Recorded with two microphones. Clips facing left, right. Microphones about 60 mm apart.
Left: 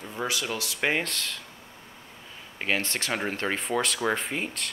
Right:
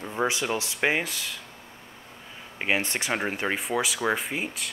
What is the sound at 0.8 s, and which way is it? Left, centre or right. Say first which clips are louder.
Speech: right 1 dB; centre.